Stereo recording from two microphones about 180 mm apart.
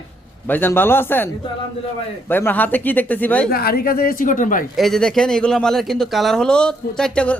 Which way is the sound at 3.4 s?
60° left (ahead or behind).